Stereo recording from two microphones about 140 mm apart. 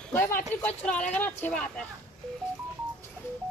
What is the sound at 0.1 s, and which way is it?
Speech, 15° left (ahead or behind).